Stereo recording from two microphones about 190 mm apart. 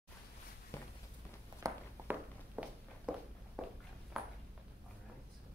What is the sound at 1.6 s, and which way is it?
Walk, 10° right (ahead or behind).